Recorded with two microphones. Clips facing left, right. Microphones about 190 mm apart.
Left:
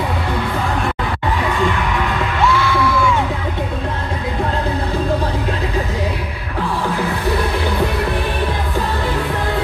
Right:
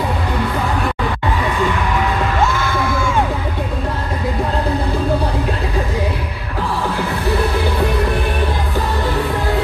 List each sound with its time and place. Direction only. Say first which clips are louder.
2.4 s music: left 2 dB; 45° right (ahead or behind)